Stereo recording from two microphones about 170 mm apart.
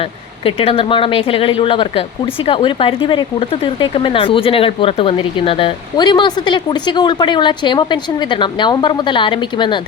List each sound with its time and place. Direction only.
0.4 s speech: 35° left (ahead or behind)